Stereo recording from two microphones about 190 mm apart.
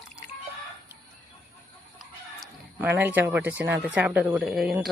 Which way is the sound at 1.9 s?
5° right (ahead or behind).